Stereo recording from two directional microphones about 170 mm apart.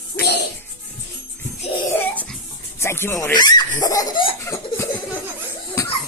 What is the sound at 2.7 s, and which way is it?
Speech, 15° left (ahead or behind).